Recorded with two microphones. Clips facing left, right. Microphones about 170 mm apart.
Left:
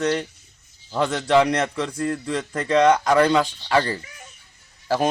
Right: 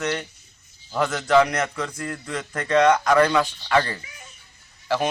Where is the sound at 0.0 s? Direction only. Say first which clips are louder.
Left 4 dB; 35° left (ahead or behind).